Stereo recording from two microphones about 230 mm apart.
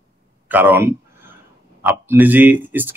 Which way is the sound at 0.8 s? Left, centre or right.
Centre.